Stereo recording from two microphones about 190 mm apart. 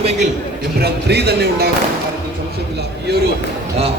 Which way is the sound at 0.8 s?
60° right (ahead or behind).